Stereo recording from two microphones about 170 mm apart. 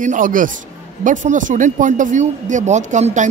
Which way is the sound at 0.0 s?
50° right (ahead or behind).